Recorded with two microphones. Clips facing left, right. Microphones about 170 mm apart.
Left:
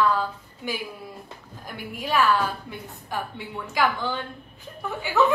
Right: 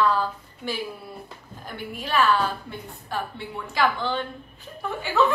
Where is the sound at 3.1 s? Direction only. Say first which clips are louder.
Right 1 dB; 15° left (ahead or behind).